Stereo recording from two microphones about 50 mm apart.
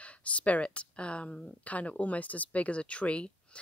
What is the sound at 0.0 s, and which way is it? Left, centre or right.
Speech, left.